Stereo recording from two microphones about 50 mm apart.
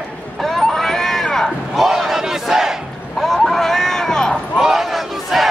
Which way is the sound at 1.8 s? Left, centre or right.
Centre.